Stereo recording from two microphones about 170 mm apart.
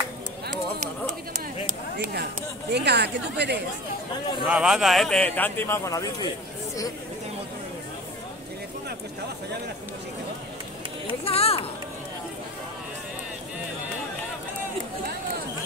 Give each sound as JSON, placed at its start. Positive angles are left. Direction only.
{"t": 2.7, "sound": "speech", "side_deg": -80}
{"t": 4.1, "sound": "speech", "side_deg": 25}
{"t": 4.5, "sound": "a man's voice", "side_deg": -5}
{"t": 11.2, "sound": "speech", "side_deg": 35}